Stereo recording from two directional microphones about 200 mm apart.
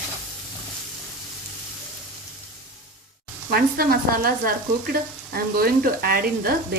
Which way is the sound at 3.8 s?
50° right (ahead or behind).